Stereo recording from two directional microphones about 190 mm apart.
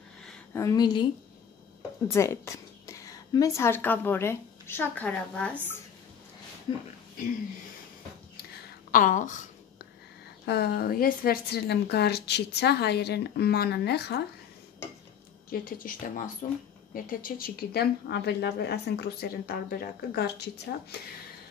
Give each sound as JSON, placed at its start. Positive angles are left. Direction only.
{"t": 0.5, "sound": "speech", "side_deg": 15}
{"t": 2.0, "sound": "a woman's voice", "side_deg": 15}
{"t": 6.7, "sound": "speech", "side_deg": 25}
{"t": 8.9, "sound": "a woman's voice", "side_deg": 40}
{"t": 10.4, "sound": "a woman's voice", "side_deg": 60}
{"t": 15.5, "sound": "a woman's voice", "side_deg": 45}